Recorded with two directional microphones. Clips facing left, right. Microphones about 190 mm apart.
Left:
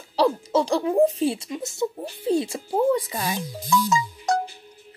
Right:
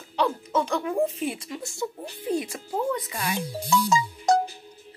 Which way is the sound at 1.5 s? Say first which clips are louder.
Left 5 dB; 20° left (ahead or behind).